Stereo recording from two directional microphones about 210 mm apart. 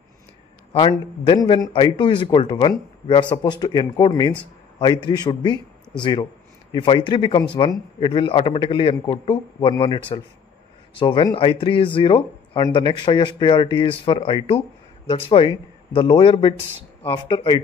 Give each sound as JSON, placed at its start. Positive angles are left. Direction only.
{"t": 0.7, "sound": "speech", "side_deg": 25}